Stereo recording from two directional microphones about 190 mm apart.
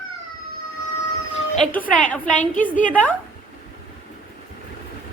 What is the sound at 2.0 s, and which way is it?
Speech, 5° left (ahead or behind).